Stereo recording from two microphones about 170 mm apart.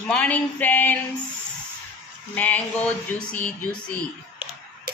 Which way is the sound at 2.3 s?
10° left (ahead or behind).